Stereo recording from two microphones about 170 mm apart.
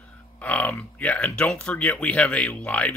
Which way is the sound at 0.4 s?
10° left (ahead or behind).